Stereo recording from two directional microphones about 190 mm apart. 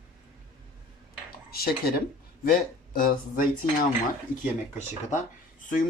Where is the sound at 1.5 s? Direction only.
55° left (ahead or behind).